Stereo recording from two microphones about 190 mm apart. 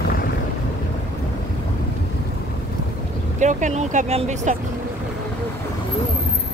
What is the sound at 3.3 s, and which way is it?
Speech, 40° right (ahead or behind).